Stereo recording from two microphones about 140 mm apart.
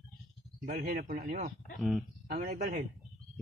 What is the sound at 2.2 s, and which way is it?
Speech, 90° right.